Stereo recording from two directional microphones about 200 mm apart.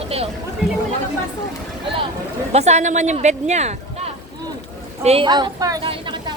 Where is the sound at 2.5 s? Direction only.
35° right (ahead or behind).